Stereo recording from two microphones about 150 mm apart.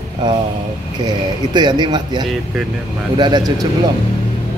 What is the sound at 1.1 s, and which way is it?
Speech, 30° right (ahead or behind).